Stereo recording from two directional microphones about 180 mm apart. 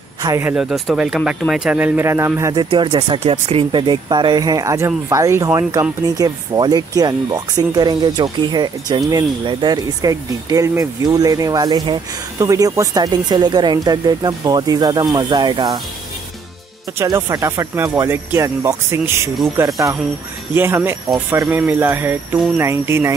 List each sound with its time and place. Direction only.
0.2 s speech: 15° right (ahead or behind)
17.0 s speech: 15° right (ahead or behind)